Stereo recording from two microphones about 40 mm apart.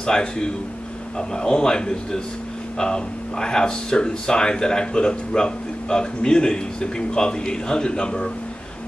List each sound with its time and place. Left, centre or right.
0.0 s speech: centre